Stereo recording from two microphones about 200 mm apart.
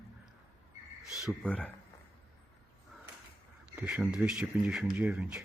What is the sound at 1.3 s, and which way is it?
Speech, 5° left (ahead or behind).